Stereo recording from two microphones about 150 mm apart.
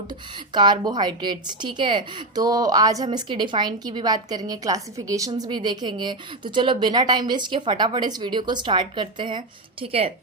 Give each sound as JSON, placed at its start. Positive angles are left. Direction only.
{"t": 0.1, "sound": "a woman's voice", "side_deg": -30}